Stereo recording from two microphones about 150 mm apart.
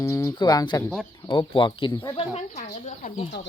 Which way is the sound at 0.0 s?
20° left (ahead or behind).